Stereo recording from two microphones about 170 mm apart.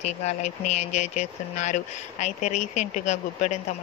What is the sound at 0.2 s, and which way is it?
Speech, 40° left (ahead or behind).